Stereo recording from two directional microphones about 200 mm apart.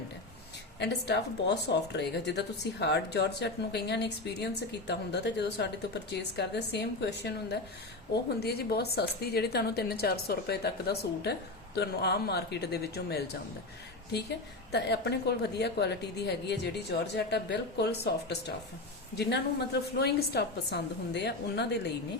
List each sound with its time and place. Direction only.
0.8 s a woman's voice: 60° left (ahead or behind)
14.7 s a woman's voice: 55° left (ahead or behind)